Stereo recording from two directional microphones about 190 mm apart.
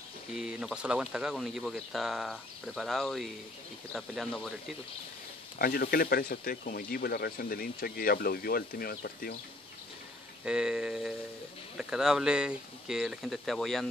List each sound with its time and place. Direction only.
0.3 s speech: 5° right (ahead or behind)
5.6 s speech: 50° left (ahead or behind)
10.4 s speech: 5° right (ahead or behind)